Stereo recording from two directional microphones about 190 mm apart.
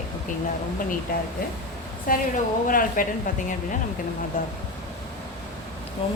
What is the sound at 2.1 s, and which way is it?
Speech, 45° left (ahead or behind).